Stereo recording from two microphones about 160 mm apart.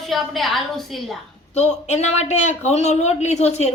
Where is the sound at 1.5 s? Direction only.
45° left (ahead or behind).